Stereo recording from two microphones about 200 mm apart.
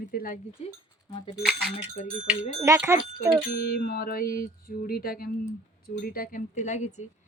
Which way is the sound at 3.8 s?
50° left (ahead or behind).